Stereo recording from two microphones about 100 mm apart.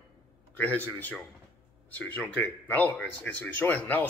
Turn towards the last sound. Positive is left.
turn(degrees=20)  # may be behind; listen again after turning